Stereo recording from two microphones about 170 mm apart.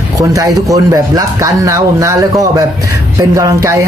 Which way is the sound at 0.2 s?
20° right (ahead or behind).